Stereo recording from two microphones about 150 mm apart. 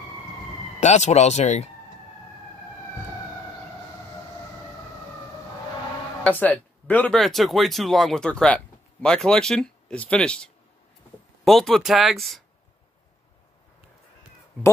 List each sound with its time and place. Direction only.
0.7 s speech: 50° left (ahead or behind)
6.2 s speech: 10° left (ahead or behind)
7.2 s speech: centre (ahead or behind)